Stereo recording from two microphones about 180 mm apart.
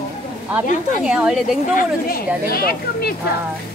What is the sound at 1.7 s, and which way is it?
Speech, 55° left (ahead or behind).